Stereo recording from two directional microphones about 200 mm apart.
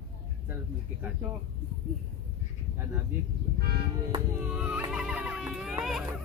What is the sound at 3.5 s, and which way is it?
Music, 50° right (ahead or behind).